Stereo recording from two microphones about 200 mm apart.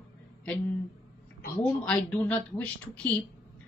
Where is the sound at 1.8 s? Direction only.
5° left (ahead or behind).